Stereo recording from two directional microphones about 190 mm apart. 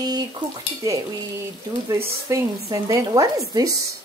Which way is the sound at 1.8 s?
15° right (ahead or behind).